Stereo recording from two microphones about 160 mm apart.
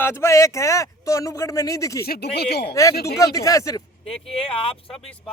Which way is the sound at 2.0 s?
85° left.